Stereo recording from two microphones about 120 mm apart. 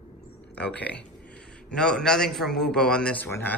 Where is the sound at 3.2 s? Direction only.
20° left (ahead or behind).